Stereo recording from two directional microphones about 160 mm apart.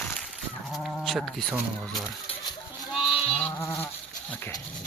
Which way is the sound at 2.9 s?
Centre (ahead or behind).